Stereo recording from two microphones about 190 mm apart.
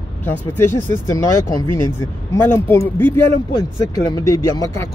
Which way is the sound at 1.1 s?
15° left (ahead or behind).